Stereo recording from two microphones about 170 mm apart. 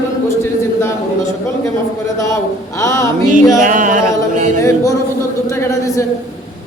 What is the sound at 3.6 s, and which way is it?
Music, 50° right (ahead or behind).